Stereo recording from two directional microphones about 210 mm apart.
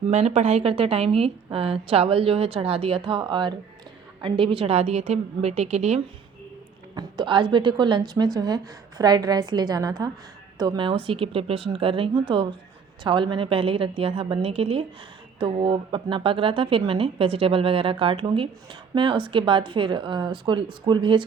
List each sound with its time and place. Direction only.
0.1 s a woman's voice: 30° right (ahead or behind)